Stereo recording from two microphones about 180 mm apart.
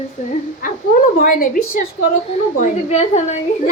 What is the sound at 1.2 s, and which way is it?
A woman's voice, 50° left (ahead or behind).